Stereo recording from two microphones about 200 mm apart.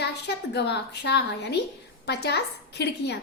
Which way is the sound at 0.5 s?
60° left (ahead or behind).